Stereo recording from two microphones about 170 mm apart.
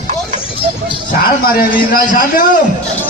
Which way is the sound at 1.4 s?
60° left (ahead or behind).